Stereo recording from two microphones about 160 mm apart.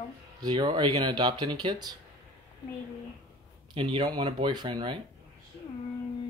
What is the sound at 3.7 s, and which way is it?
Speech, 35° right (ahead or behind).